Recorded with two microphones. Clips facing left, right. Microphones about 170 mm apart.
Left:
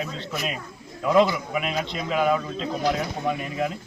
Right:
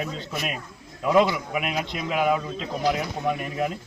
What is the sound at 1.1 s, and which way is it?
Speech, 5° right (ahead or behind).